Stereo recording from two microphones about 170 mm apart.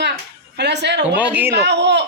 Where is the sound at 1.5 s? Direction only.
85° right.